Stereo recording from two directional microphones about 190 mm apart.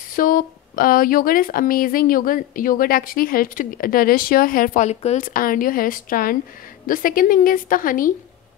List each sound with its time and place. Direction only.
0.1 s speech: 45° left (ahead or behind)